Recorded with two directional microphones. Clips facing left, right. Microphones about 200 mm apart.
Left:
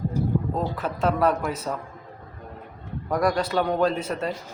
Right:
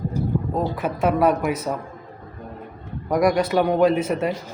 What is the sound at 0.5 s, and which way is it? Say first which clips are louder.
Speech: right 4 dB; 15° right (ahead or behind).